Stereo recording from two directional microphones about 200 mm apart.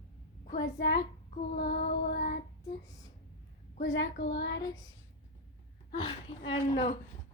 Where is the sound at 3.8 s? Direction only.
65° left (ahead or behind).